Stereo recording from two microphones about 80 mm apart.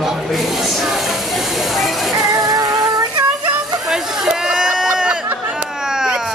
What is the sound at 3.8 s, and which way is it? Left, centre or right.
Chatter, centre.